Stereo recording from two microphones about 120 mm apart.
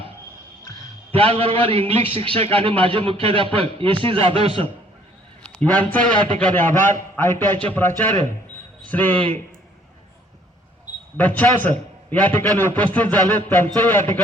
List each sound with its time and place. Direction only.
1.1 s a man's voice: 50° right (ahead or behind)
5.4 s a man's voice: 10° left (ahead or behind)
11.2 s a man's voice: 15° left (ahead or behind)